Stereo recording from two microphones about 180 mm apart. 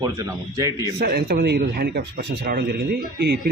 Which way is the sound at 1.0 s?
60° right (ahead or behind).